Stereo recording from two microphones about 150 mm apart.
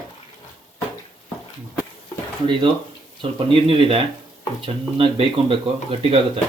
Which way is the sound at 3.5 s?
35° right (ahead or behind).